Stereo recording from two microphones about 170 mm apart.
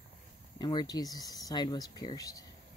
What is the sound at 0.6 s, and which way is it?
Speech, 25° left (ahead or behind).